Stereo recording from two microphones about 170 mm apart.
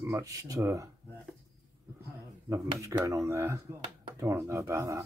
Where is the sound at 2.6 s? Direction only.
20° right (ahead or behind).